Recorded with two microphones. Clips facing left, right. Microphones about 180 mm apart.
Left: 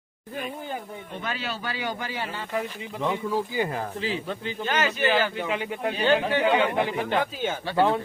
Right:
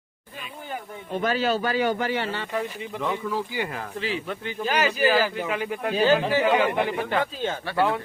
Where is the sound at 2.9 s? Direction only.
15° left (ahead or behind).